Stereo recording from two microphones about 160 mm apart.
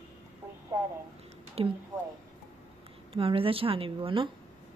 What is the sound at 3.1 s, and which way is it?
A woman's voice, 35° right (ahead or behind).